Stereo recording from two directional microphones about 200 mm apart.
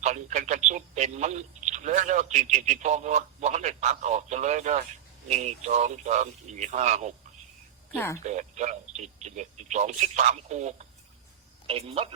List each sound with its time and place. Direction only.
0.0 s speech: 35° right (ahead or behind)
7.9 s speech: 10° left (ahead or behind)
8.2 s speech: 35° right (ahead or behind)